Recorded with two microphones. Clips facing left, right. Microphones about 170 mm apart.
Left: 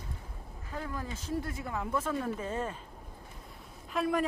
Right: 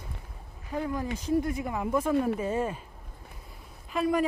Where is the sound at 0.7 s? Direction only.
15° right (ahead or behind).